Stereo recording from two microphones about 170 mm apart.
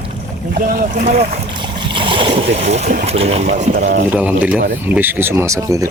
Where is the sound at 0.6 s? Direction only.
55° right (ahead or behind).